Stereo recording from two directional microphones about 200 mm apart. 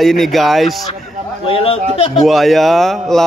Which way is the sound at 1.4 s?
25° left (ahead or behind).